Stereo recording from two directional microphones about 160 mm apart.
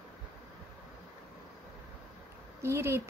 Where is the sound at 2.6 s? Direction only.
15° right (ahead or behind).